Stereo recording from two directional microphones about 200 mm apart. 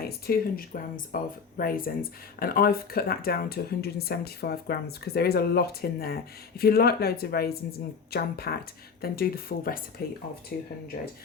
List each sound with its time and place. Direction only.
0.0 s speech: 50° left (ahead or behind)